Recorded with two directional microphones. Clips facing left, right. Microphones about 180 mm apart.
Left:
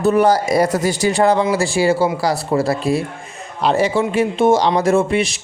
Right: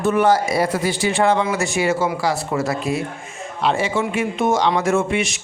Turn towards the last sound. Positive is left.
turn(degrees=35)  # may be behind; listen again after turning